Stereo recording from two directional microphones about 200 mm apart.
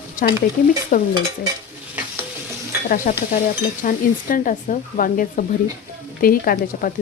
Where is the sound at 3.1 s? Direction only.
40° left (ahead or behind).